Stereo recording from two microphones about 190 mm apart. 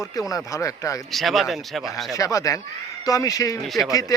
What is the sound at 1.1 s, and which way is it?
Speech, centre (ahead or behind).